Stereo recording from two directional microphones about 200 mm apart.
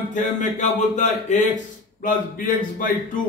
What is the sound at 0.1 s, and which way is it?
A man's voice, 40° left (ahead or behind).